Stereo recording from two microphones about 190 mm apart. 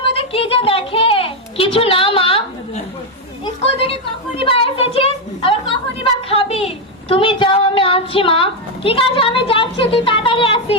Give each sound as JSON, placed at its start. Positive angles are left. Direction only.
{"t": 0.0, "sound": "a sound", "side_deg": 30}
{"t": 3.4, "sound": "a woman's voice", "side_deg": 30}
{"t": 6.2, "sound": "child singing", "side_deg": 30}